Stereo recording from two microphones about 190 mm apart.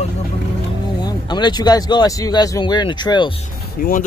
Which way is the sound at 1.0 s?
20° left (ahead or behind).